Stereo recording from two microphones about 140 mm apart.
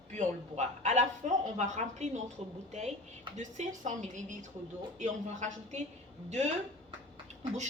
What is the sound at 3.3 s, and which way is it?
A woman's voice, 60° right (ahead or behind).